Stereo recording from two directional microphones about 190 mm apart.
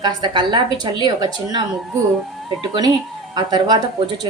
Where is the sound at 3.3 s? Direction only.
20° right (ahead or behind).